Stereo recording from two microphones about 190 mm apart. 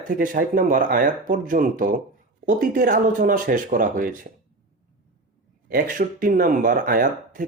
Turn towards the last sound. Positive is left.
turn(degrees=-45)  # may be behind; listen again after turning